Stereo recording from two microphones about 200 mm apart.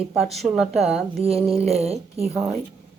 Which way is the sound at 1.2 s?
30° right (ahead or behind).